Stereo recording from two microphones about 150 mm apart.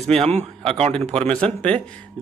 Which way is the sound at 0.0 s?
45° right (ahead or behind).